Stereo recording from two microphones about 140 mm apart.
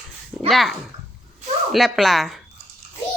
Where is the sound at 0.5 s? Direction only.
Centre (ahead or behind).